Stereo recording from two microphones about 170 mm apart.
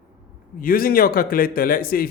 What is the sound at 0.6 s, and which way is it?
A man's voice, 60° left (ahead or behind).